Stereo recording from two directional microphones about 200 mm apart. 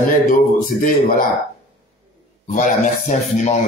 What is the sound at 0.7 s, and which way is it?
Speech, 40° left (ahead or behind).